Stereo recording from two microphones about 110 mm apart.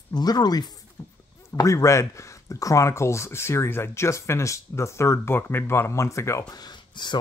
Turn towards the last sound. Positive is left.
turn(degrees=45)  # may be behind; listen again after turning